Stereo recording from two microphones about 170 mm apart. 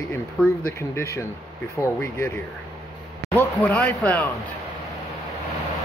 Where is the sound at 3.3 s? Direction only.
10° left (ahead or behind).